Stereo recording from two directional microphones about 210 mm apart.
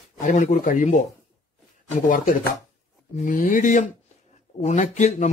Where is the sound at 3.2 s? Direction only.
40° left (ahead or behind).